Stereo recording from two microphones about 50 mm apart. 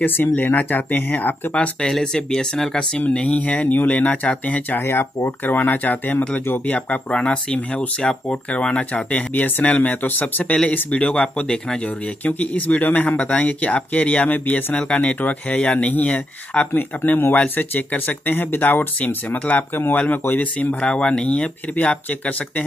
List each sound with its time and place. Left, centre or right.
0.0 s speech: left
1.5 s speech: centre
3.1 s speech: left
4.7 s speech: left
7.1 s speech: left
11.8 s speech: left
19.3 s speech: left
19.7 s speech: left
20.1 s speech: left